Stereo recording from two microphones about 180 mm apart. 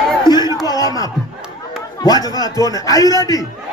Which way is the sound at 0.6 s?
20° left (ahead or behind).